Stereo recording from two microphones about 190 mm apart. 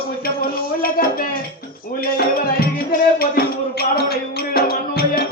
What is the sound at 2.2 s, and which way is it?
Music, 50° left (ahead or behind).